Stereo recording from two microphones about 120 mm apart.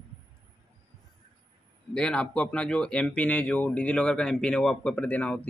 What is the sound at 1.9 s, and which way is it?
A man's voice, 10° left (ahead or behind).